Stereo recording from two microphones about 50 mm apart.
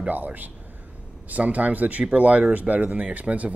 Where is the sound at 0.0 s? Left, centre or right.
Right.